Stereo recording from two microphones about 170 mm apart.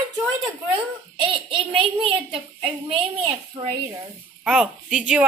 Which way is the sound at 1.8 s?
30° right (ahead or behind).